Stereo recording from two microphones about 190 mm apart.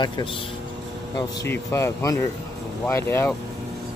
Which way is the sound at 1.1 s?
15° left (ahead or behind).